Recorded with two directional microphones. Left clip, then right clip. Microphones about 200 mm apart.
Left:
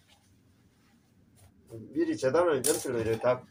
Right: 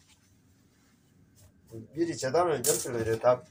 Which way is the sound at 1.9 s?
Centre (ahead or behind).